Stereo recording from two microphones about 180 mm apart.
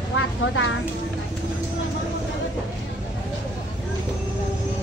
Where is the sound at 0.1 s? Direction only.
90° left.